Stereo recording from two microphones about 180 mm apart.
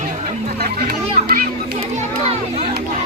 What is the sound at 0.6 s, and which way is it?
Children playing, 60° right (ahead or behind).